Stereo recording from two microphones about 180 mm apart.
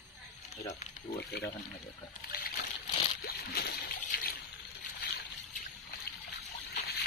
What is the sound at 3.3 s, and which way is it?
Slosh, 60° left (ahead or behind).